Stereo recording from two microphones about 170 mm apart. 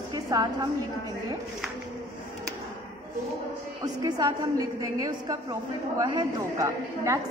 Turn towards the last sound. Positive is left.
turn(degrees=-20)  # may be behind; listen again after turning